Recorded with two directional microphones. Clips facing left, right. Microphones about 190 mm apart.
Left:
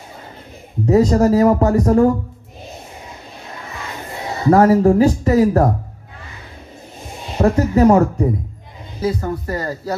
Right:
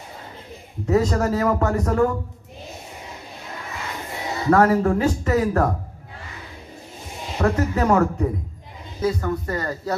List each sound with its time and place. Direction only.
0.8 s speech: 35° left (ahead or behind)
4.5 s speech: 30° left (ahead or behind)
7.3 s speech: 30° left (ahead or behind)